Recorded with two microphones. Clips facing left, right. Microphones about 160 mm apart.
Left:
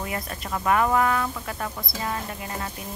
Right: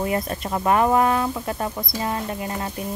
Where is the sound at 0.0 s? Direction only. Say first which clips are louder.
Right 7 dB; 30° right (ahead or behind).